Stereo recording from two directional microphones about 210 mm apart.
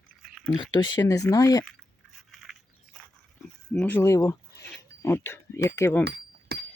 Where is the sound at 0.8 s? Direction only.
20° left (ahead or behind).